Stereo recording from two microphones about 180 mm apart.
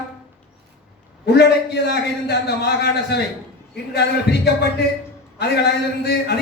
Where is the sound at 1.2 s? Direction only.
65° left (ahead or behind).